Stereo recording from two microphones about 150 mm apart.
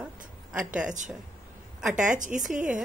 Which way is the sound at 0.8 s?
55° right (ahead or behind).